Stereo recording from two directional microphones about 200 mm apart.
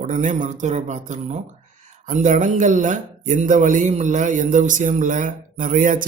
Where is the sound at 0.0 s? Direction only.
40° right (ahead or behind).